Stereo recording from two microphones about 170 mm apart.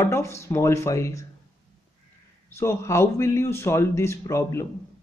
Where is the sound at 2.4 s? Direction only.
15° left (ahead or behind).